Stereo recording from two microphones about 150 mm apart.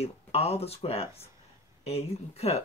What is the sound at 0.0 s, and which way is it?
Speech, 40° left (ahead or behind).